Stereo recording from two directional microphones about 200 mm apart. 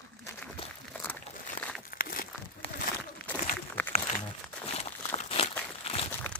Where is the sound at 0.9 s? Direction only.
10° left (ahead or behind).